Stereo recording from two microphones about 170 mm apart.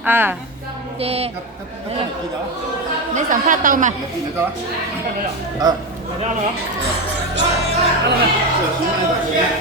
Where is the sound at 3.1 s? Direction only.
50° right (ahead or behind).